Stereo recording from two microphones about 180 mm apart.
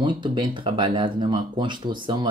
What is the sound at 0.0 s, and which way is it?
Speech, 25° right (ahead or behind).